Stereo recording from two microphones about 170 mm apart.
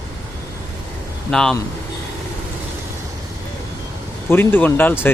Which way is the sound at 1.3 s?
5° left (ahead or behind).